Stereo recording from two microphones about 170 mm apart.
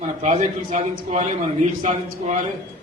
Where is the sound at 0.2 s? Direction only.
45° right (ahead or behind).